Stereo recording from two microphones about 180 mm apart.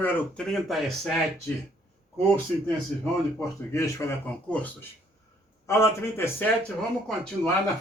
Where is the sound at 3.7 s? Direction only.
15° left (ahead or behind).